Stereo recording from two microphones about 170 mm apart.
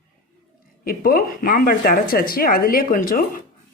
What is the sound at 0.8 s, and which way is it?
Speech, 60° left (ahead or behind).